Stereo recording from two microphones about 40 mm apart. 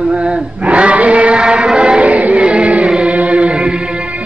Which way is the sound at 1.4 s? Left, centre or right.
Right.